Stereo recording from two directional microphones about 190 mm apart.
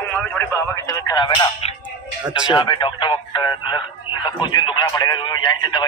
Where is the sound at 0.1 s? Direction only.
10° left (ahead or behind).